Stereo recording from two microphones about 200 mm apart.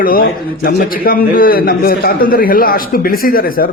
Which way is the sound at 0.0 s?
45° left (ahead or behind).